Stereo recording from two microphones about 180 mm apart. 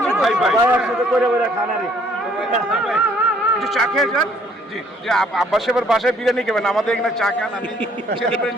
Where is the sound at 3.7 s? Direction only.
Centre (ahead or behind).